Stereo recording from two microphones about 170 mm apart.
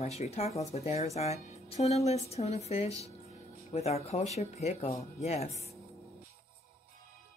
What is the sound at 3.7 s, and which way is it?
A woman's voice, 40° left (ahead or behind).